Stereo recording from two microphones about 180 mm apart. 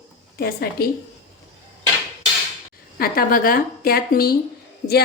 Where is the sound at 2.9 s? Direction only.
55° left (ahead or behind).